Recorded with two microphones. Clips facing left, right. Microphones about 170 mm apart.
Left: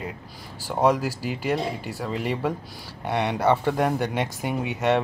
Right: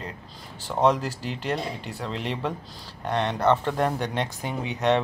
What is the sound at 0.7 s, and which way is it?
Speech, 5° left (ahead or behind).